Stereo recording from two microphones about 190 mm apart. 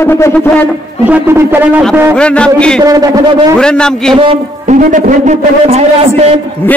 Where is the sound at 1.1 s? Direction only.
10° right (ahead or behind).